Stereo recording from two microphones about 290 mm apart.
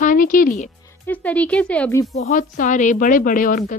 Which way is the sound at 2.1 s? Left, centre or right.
Left.